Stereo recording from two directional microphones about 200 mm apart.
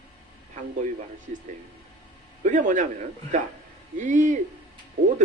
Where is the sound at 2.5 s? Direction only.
40° right (ahead or behind).